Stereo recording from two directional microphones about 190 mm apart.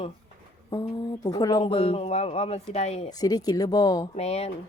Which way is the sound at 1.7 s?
30° left (ahead or behind).